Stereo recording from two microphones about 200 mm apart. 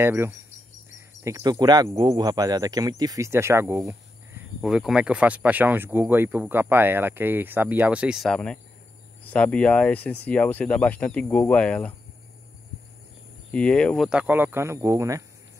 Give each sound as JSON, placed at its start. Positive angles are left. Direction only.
{"t": 0.0, "sound": "speech", "side_deg": -10}
{"t": 4.6, "sound": "speech", "side_deg": -5}
{"t": 13.5, "sound": "speech", "side_deg": 5}